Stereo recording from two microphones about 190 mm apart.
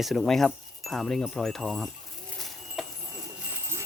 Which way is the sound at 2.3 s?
Centre (ahead or behind).